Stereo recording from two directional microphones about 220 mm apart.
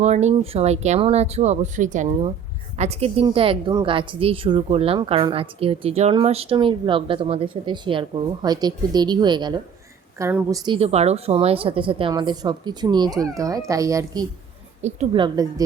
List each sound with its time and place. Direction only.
0.0 s a woman's voice: 30° right (ahead or behind); by 10.8 s 15° right (ahead or behind)
10.8 s a woman's voice: 30° right (ahead or behind)
14.8 s a woman's voice: 30° right (ahead or behind)